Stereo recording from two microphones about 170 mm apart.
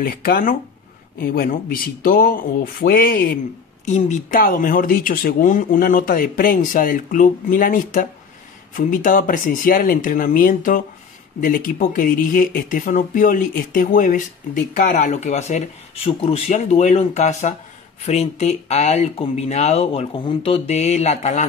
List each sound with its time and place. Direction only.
0.0 s speech: 60° left (ahead or behind)
3.8 s speech: 45° left (ahead or behind)